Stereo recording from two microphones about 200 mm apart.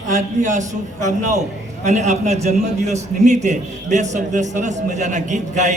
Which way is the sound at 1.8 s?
35° right (ahead or behind).